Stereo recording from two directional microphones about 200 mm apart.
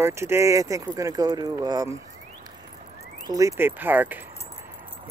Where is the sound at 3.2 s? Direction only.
20° right (ahead or behind).